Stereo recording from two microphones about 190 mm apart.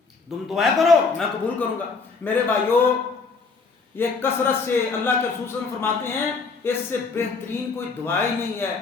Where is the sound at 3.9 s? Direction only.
10° left (ahead or behind).